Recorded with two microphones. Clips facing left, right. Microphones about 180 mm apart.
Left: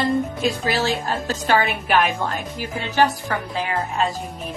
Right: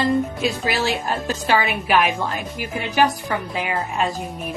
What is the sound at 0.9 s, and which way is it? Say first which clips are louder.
Speech: even; 10° right (ahead or behind).